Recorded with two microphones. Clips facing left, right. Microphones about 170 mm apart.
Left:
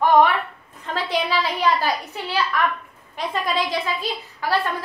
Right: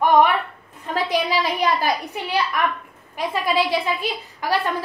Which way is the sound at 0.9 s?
10° right (ahead or behind).